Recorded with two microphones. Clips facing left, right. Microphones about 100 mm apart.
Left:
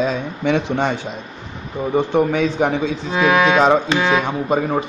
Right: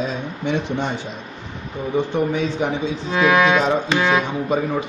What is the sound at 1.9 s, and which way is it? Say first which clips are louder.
A man's voice: left 4 dB; 65° left (ahead or behind).